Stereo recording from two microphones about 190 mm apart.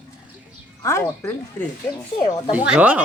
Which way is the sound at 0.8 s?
15° left (ahead or behind).